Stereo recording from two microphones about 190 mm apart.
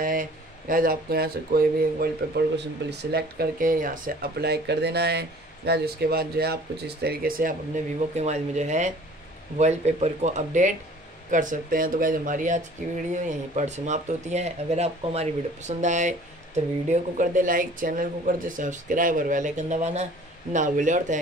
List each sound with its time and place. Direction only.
0.0 s speech: 45° right (ahead or behind)